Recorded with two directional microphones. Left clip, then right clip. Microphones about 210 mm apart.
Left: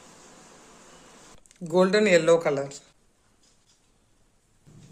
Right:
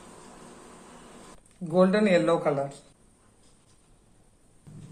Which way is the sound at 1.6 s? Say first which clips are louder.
Left 2 dB; 60° left (ahead or behind).